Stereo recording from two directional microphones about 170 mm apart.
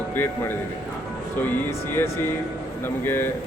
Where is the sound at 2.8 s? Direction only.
15° left (ahead or behind).